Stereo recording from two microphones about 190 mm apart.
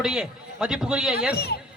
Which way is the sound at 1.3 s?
55° left (ahead or behind).